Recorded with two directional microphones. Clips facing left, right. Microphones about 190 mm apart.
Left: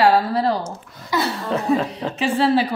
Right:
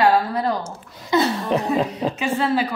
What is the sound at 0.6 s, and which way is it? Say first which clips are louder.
Speech: left 2 dB; 20° right (ahead or behind).